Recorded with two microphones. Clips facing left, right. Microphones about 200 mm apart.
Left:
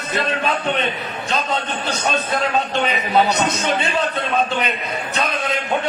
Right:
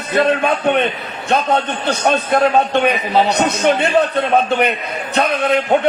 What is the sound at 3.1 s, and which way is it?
Speech, 30° right (ahead or behind).